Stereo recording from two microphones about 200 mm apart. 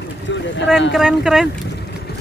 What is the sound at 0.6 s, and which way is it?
Speech, 65° left (ahead or behind).